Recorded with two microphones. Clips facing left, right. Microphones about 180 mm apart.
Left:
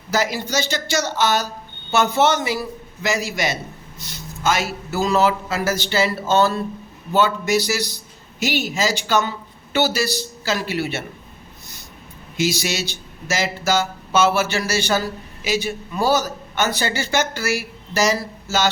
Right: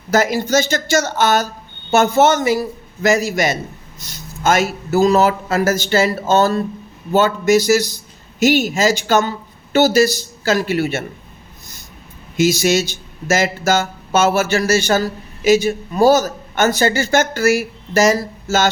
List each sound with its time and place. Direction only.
0.1 s speech: 50° right (ahead or behind)
12.4 s speech: 45° right (ahead or behind)